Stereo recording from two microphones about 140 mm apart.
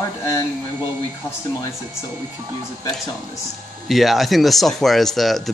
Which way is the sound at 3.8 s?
Centre (ahead or behind).